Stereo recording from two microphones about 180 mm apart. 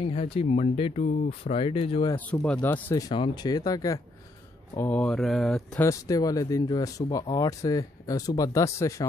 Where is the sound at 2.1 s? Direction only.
10° left (ahead or behind).